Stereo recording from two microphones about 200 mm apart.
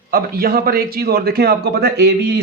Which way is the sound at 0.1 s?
50° right (ahead or behind).